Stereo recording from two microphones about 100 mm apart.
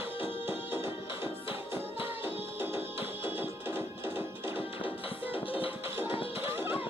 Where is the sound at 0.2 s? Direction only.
25° right (ahead or behind).